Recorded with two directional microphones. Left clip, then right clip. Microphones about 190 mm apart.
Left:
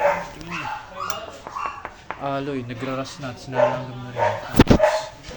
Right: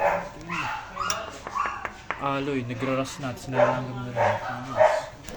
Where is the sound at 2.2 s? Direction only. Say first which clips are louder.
Left 1 dB; centre (ahead or behind).